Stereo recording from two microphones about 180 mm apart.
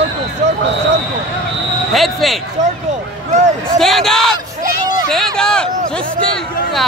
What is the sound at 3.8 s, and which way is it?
Speech, centre (ahead or behind).